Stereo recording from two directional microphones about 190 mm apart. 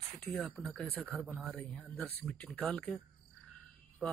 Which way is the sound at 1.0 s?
10° right (ahead or behind).